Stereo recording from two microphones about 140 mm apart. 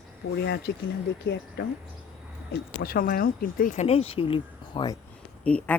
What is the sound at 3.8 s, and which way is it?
Speech, 45° left (ahead or behind).